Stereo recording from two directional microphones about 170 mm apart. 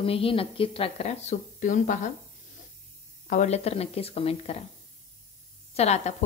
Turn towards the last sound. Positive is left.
turn(degrees=40)  # may be behind; listen again after turning